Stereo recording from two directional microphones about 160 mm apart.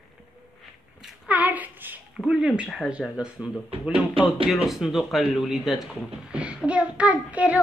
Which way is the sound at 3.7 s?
35° right (ahead or behind).